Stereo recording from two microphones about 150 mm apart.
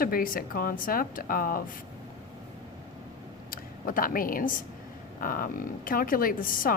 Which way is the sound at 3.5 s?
70° left (ahead or behind).